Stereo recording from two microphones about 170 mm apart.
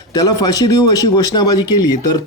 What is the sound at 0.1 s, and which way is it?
A man's voice, 20° left (ahead or behind).